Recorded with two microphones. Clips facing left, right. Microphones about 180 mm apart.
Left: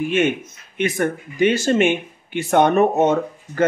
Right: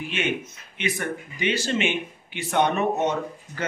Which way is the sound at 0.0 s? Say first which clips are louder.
Left 8 dB; 50° left (ahead or behind).